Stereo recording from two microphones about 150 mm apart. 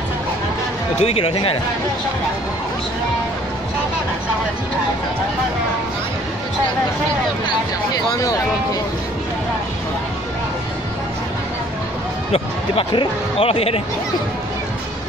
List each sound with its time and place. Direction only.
1.0 s speech: 40° left (ahead or behind)
12.3 s speech: 35° left (ahead or behind)